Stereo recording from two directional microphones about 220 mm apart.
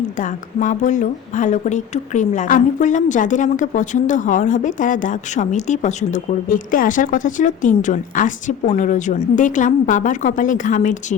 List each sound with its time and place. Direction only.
0.2 s speech: 35° left (ahead or behind)